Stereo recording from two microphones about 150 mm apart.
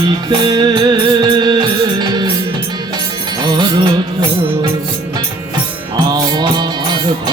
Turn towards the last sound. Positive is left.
turn(degrees=-30)  # may be behind; listen again after turning